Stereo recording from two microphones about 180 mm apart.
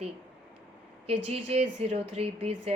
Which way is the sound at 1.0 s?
35° right (ahead or behind).